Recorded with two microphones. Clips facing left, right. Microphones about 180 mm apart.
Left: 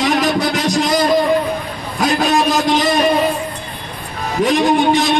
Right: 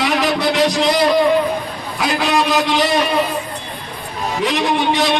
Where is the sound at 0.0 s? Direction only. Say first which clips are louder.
Left 1 dB; 45° left (ahead or behind).